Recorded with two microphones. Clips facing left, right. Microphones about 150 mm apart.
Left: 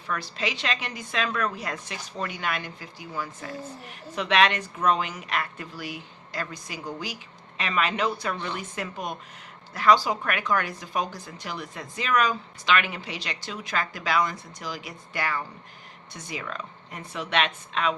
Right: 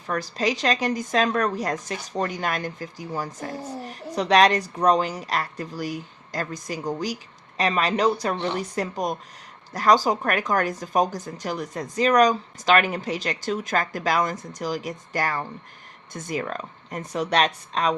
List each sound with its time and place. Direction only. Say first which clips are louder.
0.1 s a woman's voice: right 6 dB; 40° right (ahead or behind)